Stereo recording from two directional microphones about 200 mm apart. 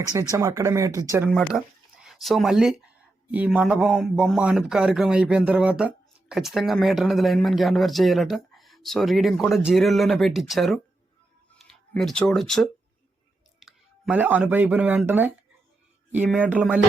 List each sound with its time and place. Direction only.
0.1 s speech: 15° right (ahead or behind)
1.3 s speech: centre (ahead or behind)
16.4 s speech: 5° right (ahead or behind)